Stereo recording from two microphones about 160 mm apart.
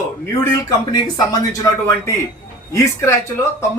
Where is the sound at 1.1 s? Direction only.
20° left (ahead or behind).